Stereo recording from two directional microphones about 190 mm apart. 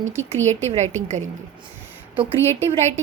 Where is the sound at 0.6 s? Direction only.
35° right (ahead or behind).